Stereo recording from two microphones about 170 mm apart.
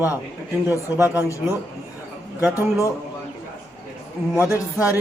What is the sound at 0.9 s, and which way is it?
Speech, 10° right (ahead or behind).